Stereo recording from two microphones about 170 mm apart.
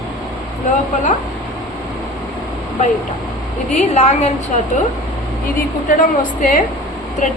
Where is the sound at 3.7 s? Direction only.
45° left (ahead or behind).